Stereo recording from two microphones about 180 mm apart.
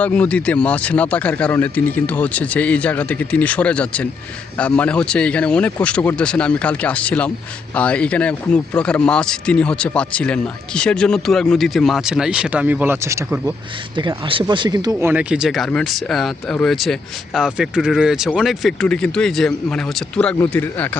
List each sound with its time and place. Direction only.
0.0 s speech: 5° left (ahead or behind); by 15.1 s 20° right (ahead or behind)
15.1 s speech: 5° right (ahead or behind); by 21.0 s 10° left (ahead or behind)